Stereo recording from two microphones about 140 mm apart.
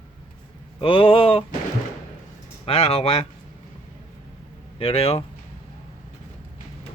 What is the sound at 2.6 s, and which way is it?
Speech, 45° left (ahead or behind).